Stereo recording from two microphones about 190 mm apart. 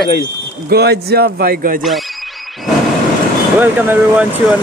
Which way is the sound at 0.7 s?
55° right (ahead or behind).